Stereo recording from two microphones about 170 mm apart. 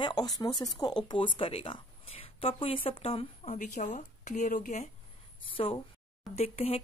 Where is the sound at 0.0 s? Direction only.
25° left (ahead or behind).